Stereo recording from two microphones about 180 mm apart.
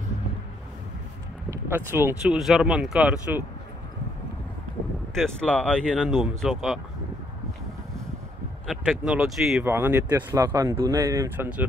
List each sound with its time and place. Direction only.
1.5 s speech: 10° right (ahead or behind)
2.3 s speech: centre (ahead or behind)
5.1 s speech: 5° left (ahead or behind)
8.6 s speech: centre (ahead or behind)
9.7 s speech: 10° right (ahead or behind)